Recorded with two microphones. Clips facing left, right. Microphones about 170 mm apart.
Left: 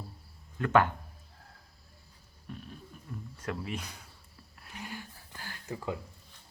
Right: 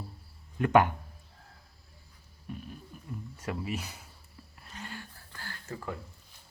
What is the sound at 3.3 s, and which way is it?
Speech, 5° right (ahead or behind).